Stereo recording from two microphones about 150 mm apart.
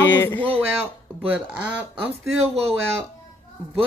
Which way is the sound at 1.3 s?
10° right (ahead or behind).